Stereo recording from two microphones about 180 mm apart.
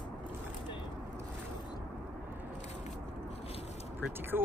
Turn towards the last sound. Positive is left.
turn(degrees=-10)  # may be behind; listen again after turning